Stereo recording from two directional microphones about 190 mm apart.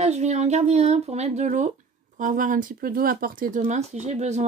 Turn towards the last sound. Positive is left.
turn(degrees=-35)  # may be behind; listen again after turning